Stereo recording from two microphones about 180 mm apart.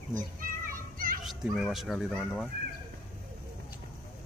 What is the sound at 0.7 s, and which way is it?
Music, 50° right (ahead or behind).